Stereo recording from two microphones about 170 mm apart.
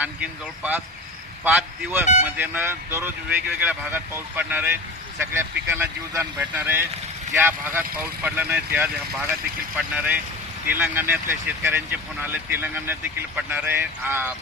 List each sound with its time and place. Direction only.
0.0 s speech: 10° right (ahead or behind)